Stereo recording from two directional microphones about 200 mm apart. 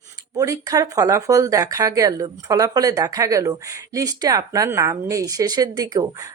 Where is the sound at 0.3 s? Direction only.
15° right (ahead or behind).